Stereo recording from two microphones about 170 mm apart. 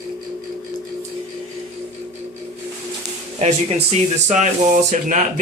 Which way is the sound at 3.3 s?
40° right (ahead or behind).